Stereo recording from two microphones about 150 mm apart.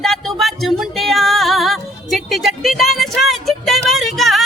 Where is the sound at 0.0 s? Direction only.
Centre (ahead or behind).